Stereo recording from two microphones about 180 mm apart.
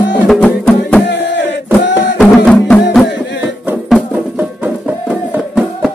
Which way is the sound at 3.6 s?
5° right (ahead or behind).